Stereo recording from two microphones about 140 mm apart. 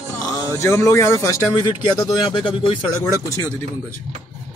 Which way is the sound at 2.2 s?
40° left (ahead or behind).